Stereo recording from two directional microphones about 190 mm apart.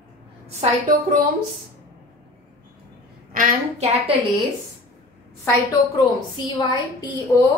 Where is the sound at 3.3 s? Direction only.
40° right (ahead or behind).